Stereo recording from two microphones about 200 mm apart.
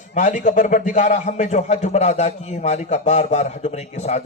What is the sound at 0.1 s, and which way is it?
A man's voice, 35° left (ahead or behind).